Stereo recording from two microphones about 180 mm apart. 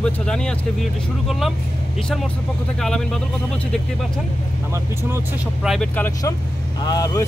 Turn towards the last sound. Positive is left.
turn(degrees=20)  # may be behind; listen again after turning